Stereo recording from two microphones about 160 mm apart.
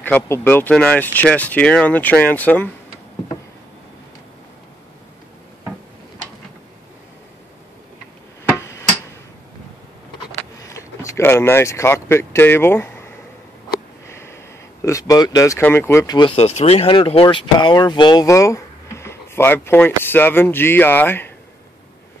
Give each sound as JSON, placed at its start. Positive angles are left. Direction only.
{"t": 0.0, "sound": "speech", "side_deg": 10}
{"t": 8.5, "sound": "music", "side_deg": 15}
{"t": 10.6, "sound": "speech", "side_deg": 20}
{"t": 14.0, "sound": "speech", "side_deg": 15}
{"t": 16.3, "sound": "speech", "side_deg": 40}